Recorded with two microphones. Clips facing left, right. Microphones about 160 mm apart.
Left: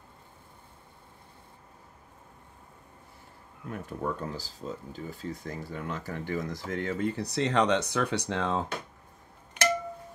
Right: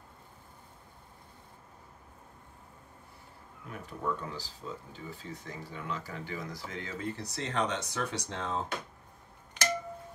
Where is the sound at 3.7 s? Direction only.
45° left (ahead or behind); by 8.6 s 80° left.